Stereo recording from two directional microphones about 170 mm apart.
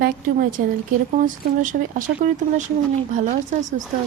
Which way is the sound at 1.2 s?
50° right (ahead or behind).